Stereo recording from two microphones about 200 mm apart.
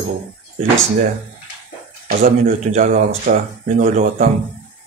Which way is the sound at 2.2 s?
35° right (ahead or behind).